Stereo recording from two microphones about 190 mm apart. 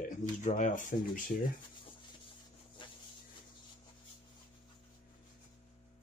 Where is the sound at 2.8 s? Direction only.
25° left (ahead or behind).